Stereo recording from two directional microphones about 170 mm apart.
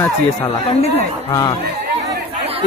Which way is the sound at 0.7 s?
35° left (ahead or behind).